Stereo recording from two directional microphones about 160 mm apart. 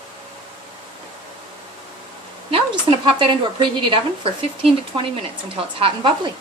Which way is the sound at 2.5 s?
35° right (ahead or behind).